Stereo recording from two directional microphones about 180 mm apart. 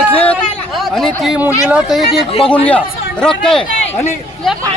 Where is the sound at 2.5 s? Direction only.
5° left (ahead or behind).